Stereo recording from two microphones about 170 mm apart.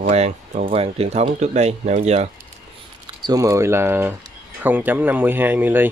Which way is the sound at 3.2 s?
20° right (ahead or behind).